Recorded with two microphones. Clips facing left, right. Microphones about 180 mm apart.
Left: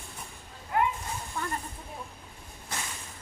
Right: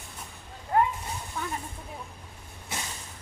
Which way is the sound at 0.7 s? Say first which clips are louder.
Right 3 dB; 40° right (ahead or behind).